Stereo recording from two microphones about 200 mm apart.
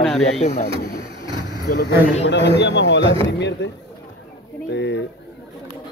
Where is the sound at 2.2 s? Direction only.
60° left (ahead or behind).